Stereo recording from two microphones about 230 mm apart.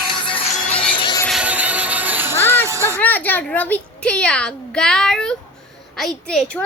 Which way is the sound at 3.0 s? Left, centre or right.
Centre.